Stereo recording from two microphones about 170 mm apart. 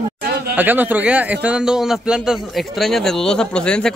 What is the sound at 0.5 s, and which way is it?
A man's voice, 10° right (ahead or behind).